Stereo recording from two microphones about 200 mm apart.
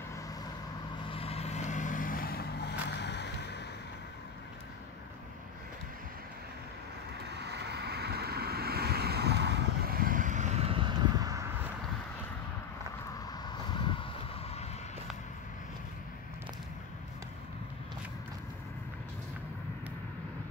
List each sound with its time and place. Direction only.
1.0 s vehicle: 30° left (ahead or behind); by 3.6 s 55° left (ahead or behind)
7.2 s vehicle: 55° right (ahead or behind); by 11.5 s 15° right (ahead or behind)
13.5 s vehicle: 25° left (ahead or behind)